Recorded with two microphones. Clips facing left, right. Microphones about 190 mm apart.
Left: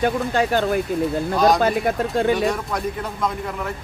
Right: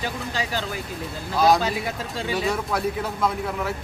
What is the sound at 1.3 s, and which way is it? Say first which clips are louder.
Speech: left 1 dB; 5° right (ahead or behind).